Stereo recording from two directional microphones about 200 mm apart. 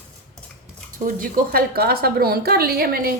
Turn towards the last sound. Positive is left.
turn(degrees=-50)  # may be behind; listen again after turning